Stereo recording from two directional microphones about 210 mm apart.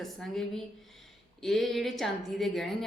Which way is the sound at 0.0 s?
Centre (ahead or behind).